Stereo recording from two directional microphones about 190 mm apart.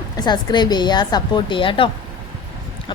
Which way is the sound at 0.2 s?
20° left (ahead or behind).